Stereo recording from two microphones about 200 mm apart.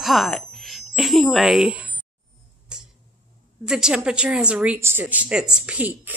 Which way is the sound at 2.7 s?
5° right (ahead or behind).